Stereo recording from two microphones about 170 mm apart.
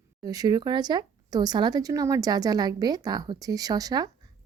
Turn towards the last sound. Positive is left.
turn(degrees=-20)  # may be behind; listen again after turning